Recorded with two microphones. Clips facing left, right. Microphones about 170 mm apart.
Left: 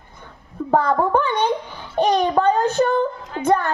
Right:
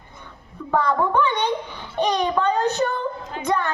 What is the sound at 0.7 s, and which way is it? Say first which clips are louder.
A child's voice: left 3 dB; 45° left (ahead or behind).